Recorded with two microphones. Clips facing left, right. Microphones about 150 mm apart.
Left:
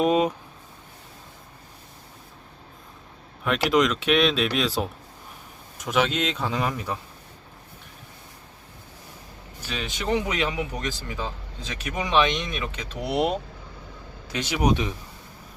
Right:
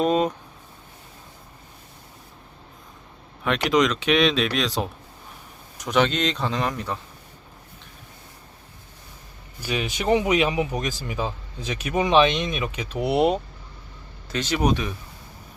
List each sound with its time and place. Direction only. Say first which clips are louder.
0.0 s speech: even; 10° left (ahead or behind)
3.4 s speech: right 1 dB; centre (ahead or behind)
9.6 s speech: right 5 dB; 15° right (ahead or behind)
14.3 s speech: right 1 dB; 10° left (ahead or behind)